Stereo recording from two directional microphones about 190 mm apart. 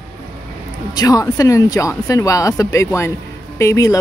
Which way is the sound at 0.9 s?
20° left (ahead or behind).